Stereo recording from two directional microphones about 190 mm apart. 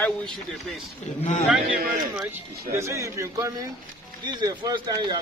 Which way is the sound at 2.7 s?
15° right (ahead or behind).